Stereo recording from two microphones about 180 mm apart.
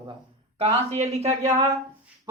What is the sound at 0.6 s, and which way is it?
Speech, 35° right (ahead or behind).